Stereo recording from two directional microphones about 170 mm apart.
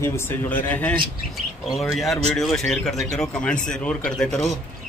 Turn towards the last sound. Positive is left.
turn(degrees=5)  # may be behind; listen again after turning